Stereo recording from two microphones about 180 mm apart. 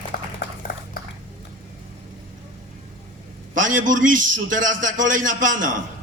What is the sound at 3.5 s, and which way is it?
A man's voice, 45° right (ahead or behind).